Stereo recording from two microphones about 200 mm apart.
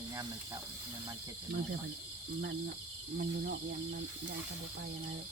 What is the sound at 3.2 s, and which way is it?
Speech, 60° right (ahead or behind).